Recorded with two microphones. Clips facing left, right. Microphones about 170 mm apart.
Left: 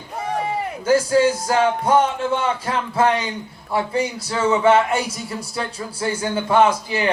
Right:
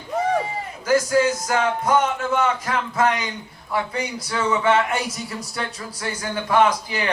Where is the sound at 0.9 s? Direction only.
30° left (ahead or behind).